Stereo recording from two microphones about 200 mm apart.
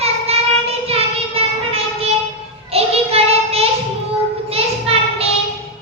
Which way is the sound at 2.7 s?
30° right (ahead or behind).